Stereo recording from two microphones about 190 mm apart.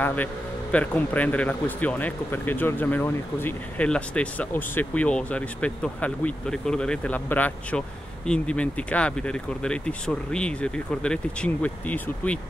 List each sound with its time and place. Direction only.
0.0 s speech: 10° left (ahead or behind)